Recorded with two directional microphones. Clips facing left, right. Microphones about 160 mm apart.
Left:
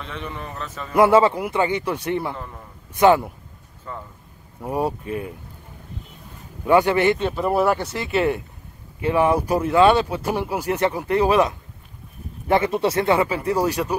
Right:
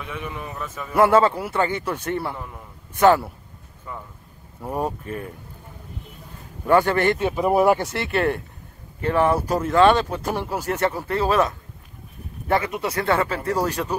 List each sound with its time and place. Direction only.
0.0 s a man's voice: 10° right (ahead or behind)
0.9 s speech: 10° left (ahead or behind)
2.3 s a man's voice: 10° right (ahead or behind)
2.9 s speech: 10° left (ahead or behind)
3.9 s a man's voice: 10° right (ahead or behind)
4.6 s speech: 10° left (ahead or behind)
6.6 s speech: 10° left (ahead or behind)
7.2 s a man's voice: 10° right (ahead or behind)
7.9 s speech: 5° left (ahead or behind)
12.4 s speech: 25° left (ahead or behind)
13.1 s speech: 15° left (ahead or behind)